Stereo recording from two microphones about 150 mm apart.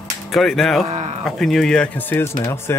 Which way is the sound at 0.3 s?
Centre (ahead or behind).